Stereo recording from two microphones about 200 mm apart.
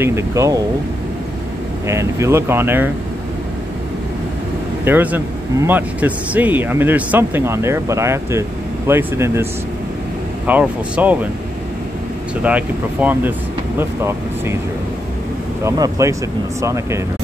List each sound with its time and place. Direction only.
0.0 s a man's voice: 15° right (ahead or behind)
1.9 s a man's voice: 15° right (ahead or behind)
4.8 s a man's voice: 10° right (ahead or behind)
12.4 s a man's voice: 5° right (ahead or behind)
15.6 s a man's voice: 15° right (ahead or behind)